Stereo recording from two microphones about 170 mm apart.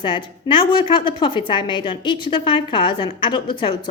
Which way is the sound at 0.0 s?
30° left (ahead or behind).